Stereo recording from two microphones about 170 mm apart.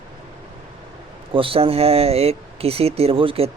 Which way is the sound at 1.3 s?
30° right (ahead or behind).